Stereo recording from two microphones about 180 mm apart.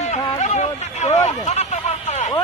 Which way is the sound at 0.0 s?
40° left (ahead or behind).